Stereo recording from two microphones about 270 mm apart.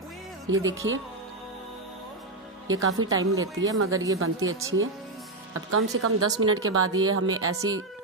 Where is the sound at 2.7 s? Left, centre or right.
Right.